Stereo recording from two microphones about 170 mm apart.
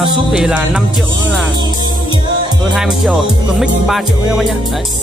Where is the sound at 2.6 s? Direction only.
Centre (ahead or behind).